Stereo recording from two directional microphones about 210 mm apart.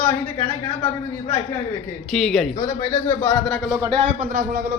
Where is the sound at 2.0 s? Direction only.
Centre (ahead or behind).